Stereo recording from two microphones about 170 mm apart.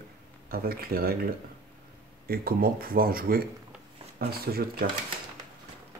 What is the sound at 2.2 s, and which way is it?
Speech, 60° right (ahead or behind).